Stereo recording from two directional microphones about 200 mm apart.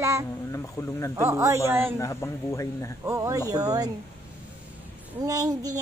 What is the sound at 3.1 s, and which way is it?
Speech, 15° right (ahead or behind).